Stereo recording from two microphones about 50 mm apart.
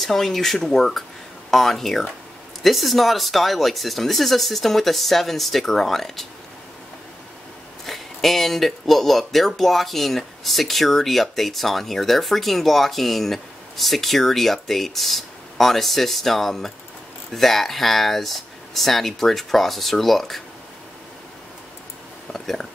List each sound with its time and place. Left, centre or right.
0.0 s speech: centre
7.8 s speech: centre
22.3 s speech: centre